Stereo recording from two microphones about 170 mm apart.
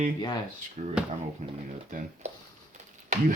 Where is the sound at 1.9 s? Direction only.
50° right (ahead or behind).